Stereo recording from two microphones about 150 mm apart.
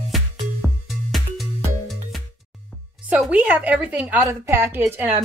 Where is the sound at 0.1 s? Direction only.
Centre (ahead or behind).